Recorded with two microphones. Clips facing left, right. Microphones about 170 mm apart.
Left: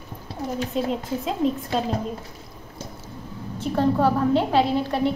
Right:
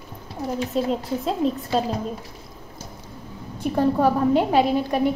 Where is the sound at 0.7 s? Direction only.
Centre (ahead or behind).